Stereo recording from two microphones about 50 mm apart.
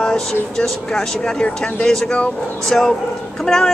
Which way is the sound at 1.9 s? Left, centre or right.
Centre.